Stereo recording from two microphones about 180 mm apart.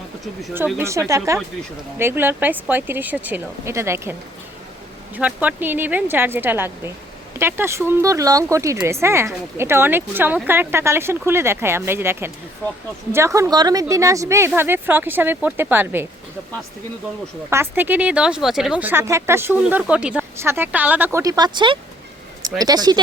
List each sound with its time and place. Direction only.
0.8 s speech: 15° right (ahead or behind)
5.1 s speech: 10° right (ahead or behind)
17.5 s speech: 10° right (ahead or behind)